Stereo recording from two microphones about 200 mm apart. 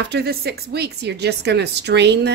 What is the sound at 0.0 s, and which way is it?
A woman's voice, 55° right (ahead or behind).